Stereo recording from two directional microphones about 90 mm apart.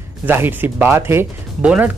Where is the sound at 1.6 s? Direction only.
15° right (ahead or behind).